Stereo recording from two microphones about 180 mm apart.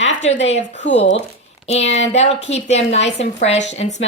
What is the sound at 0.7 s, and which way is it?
Speech, 80° left.